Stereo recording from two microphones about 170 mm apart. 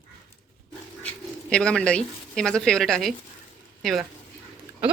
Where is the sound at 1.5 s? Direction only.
5° left (ahead or behind).